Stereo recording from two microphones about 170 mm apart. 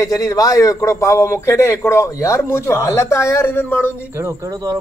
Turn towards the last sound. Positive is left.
turn(degrees=-20)  # may be behind; listen again after turning